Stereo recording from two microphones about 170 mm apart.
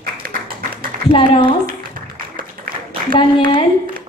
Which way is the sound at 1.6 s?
55° right (ahead or behind).